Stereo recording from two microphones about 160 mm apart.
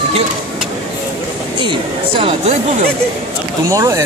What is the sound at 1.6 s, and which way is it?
Speech, 30° right (ahead or behind).